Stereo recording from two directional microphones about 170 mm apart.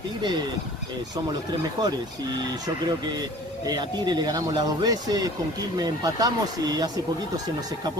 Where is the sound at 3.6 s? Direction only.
25° right (ahead or behind).